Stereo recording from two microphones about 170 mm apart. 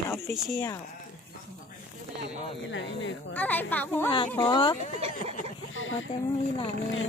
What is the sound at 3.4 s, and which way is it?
Speech, 10° left (ahead or behind).